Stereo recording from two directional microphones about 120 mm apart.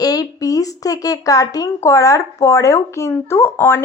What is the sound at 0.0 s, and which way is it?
Speech, 30° left (ahead or behind).